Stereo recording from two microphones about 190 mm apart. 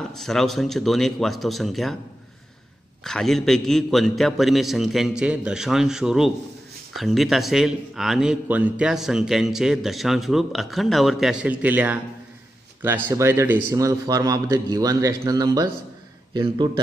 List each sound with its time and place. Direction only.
0.1 s a man's voice: centre (ahead or behind)
3.0 s a man's voice: centre (ahead or behind); by 16.8 s 20° right (ahead or behind)